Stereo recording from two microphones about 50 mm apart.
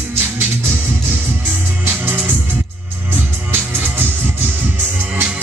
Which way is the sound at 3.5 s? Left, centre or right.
Right.